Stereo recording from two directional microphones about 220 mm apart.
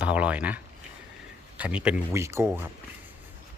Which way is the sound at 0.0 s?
5° right (ahead or behind).